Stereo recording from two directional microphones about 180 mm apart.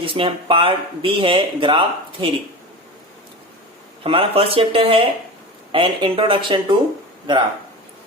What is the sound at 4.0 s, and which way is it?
Speech, 30° right (ahead or behind).